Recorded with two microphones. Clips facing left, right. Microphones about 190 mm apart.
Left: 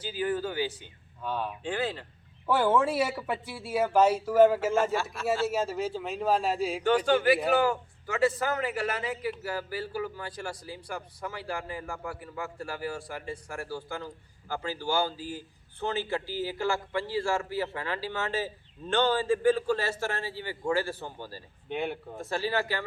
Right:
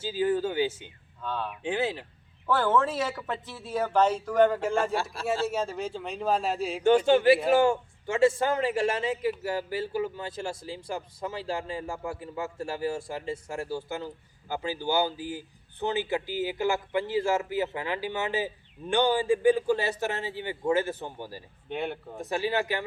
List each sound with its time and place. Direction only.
0.0 s speech: 25° right (ahead or behind)
1.2 s speech: 10° left (ahead or behind)
1.6 s speech: 20° right (ahead or behind)
2.5 s a man's voice: 10° left (ahead or behind)
6.8 s a man's voice: 25° right (ahead or behind)
21.7 s a man's voice: centre (ahead or behind)
22.2 s a man's voice: 15° right (ahead or behind)